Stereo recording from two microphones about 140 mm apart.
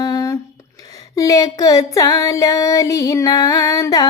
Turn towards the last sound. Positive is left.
turn(degrees=25)  # may be behind; listen again after turning